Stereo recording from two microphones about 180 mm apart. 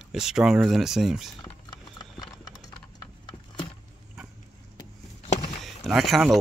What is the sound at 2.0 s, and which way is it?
Clip-clop, 20° left (ahead or behind).